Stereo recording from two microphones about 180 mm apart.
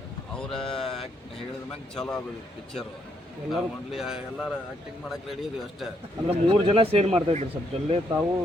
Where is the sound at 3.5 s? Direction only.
Centre (ahead or behind).